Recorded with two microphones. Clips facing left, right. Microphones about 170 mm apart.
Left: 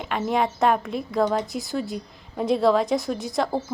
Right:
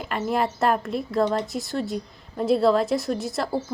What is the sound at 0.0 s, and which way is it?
A woman's voice, centre (ahead or behind).